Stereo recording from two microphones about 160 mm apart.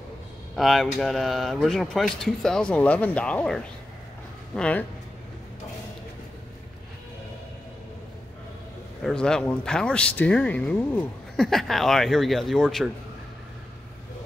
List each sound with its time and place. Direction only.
0.6 s speech: centre (ahead or behind)
9.0 s speech: 5° left (ahead or behind)